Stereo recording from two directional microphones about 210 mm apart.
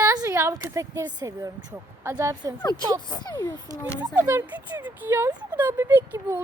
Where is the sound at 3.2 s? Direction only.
15° left (ahead or behind).